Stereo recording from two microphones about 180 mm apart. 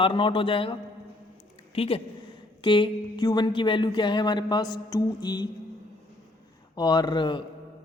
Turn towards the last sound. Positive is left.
turn(degrees=25)  # may be behind; listen again after turning